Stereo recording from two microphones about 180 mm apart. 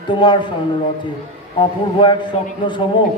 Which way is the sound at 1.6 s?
25° left (ahead or behind).